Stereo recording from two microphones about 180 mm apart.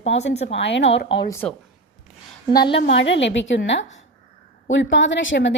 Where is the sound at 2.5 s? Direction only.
25° left (ahead or behind).